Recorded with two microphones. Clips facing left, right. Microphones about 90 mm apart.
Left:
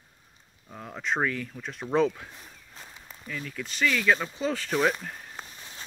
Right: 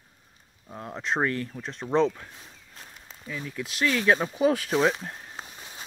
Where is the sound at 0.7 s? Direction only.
15° right (ahead or behind).